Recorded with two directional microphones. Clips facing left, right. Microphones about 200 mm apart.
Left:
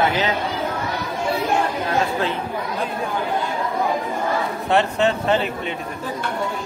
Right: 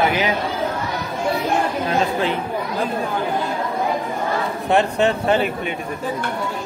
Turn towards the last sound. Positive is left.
turn(degrees=-15)  # may be behind; listen again after turning